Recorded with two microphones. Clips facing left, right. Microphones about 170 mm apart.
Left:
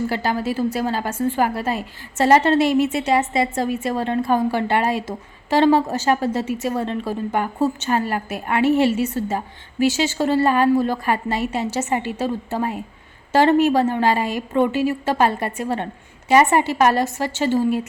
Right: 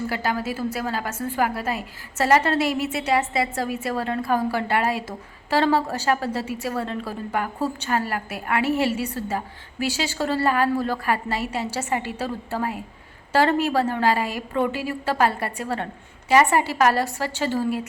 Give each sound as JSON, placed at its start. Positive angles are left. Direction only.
{"t": 0.1, "sound": "a woman's voice", "side_deg": 30}